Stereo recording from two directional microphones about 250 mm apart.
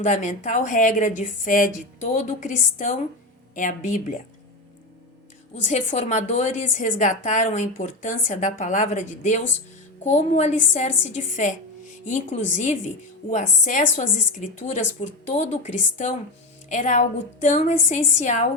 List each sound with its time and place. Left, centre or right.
0.0 s a woman's voice: left
5.6 s a woman's voice: left